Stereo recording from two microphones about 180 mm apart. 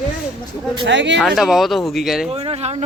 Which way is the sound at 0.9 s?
90° right.